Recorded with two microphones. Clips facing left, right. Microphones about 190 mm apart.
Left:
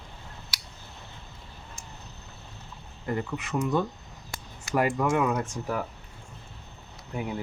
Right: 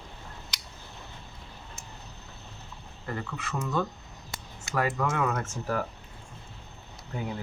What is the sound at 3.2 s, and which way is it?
Speech, 20° left (ahead or behind).